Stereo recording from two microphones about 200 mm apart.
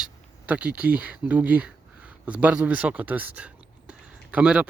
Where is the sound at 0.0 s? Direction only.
5° right (ahead or behind).